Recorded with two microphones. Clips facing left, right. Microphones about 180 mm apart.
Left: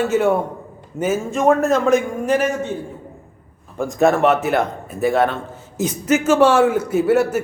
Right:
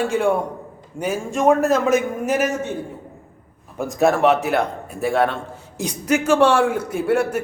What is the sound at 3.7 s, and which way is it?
A man's voice, centre (ahead or behind).